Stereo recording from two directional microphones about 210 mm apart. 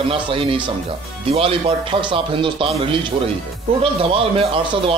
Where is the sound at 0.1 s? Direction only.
25° right (ahead or behind).